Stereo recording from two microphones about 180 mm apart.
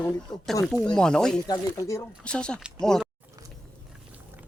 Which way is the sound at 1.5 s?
20° left (ahead or behind).